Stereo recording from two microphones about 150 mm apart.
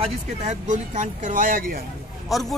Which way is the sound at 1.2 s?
60° right (ahead or behind).